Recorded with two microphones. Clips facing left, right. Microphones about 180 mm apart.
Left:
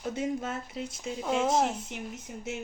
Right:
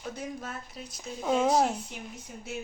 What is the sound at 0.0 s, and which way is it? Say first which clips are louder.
Speech: left 6 dB; 25° left (ahead or behind).